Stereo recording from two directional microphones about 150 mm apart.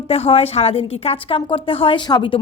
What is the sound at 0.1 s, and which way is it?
A woman's voice, 45° left (ahead or behind).